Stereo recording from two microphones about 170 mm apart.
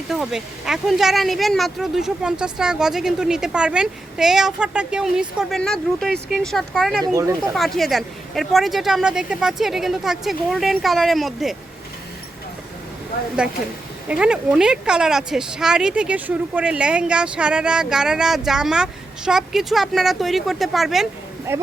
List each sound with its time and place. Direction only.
0.1 s speech: centre (ahead or behind)
7.0 s speech: 20° right (ahead or behind)
7.5 s speech: centre (ahead or behind)
14.1 s speech: 5° right (ahead or behind)
21.5 s speech: 15° right (ahead or behind)